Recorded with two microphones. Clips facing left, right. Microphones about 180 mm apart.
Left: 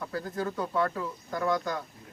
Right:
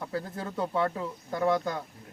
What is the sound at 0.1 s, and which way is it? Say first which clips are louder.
Speech: left 2 dB; 25° right (ahead or behind).